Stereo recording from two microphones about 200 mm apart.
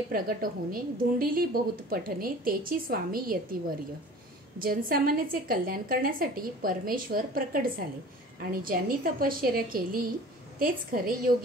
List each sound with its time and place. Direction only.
0.1 s a woman's voice: 45° right (ahead or behind)
4.6 s a woman's voice: 45° right (ahead or behind)